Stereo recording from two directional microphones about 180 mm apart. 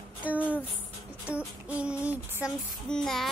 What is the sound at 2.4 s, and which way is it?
Child singing, 5° right (ahead or behind).